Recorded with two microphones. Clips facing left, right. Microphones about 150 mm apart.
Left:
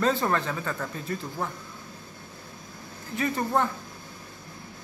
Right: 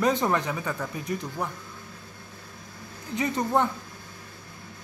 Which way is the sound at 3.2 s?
20° right (ahead or behind).